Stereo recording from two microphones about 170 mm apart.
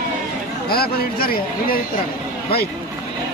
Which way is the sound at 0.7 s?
65° left (ahead or behind).